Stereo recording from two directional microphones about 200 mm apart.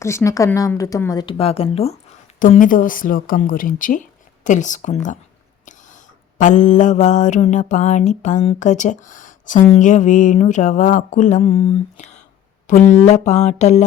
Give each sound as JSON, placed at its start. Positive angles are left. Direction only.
{"t": 0.0, "sound": "speech", "side_deg": 15}
{"t": 2.4, "sound": "a woman's voice", "side_deg": 40}
{"t": 4.4, "sound": "mantra", "side_deg": 40}
{"t": 6.4, "sound": "mantra", "side_deg": 40}